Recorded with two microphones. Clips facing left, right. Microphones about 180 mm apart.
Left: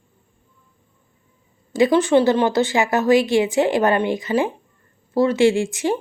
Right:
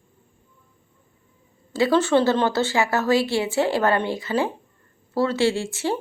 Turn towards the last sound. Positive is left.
turn(degrees=15)  # may be behind; listen again after turning